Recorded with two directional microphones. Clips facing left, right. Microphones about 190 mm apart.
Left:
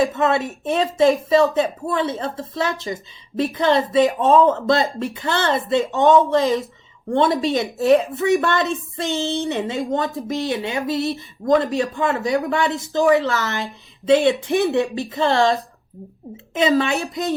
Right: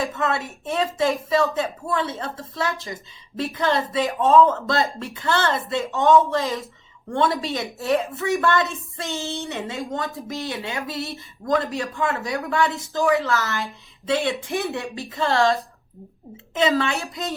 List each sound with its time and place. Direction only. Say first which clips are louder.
0.0 s speech: left 6 dB; 20° left (ahead or behind)
16.6 s a woman's voice: left 3 dB; 15° left (ahead or behind)